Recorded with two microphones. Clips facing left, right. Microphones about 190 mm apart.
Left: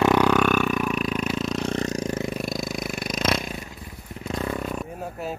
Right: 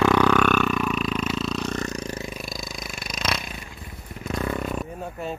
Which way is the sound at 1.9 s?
45° left (ahead or behind).